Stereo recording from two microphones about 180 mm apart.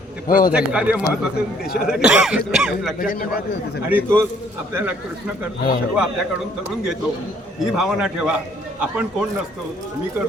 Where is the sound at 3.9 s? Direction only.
10° right (ahead or behind).